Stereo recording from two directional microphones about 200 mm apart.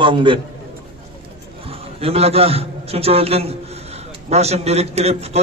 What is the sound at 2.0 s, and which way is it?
A man's voice, 30° right (ahead or behind).